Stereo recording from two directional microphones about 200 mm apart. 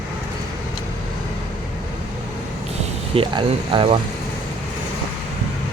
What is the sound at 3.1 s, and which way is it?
Speech, 25° right (ahead or behind).